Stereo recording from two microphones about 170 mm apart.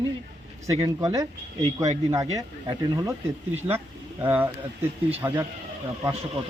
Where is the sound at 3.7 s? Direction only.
10° right (ahead or behind).